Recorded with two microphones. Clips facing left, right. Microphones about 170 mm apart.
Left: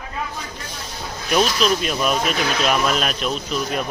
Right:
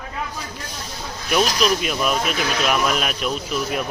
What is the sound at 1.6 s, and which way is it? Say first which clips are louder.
Speech: left 1 dB; 5° right (ahead or behind).